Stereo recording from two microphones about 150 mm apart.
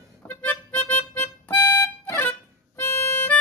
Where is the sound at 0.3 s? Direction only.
15° left (ahead or behind).